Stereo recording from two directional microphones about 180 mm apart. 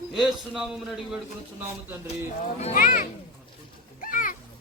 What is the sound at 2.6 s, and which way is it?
Speech, 45° left (ahead or behind).